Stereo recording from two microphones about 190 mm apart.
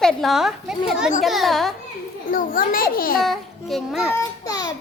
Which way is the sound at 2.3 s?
50° left (ahead or behind).